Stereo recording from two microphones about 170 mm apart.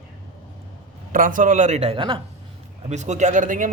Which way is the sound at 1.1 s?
55° right (ahead or behind).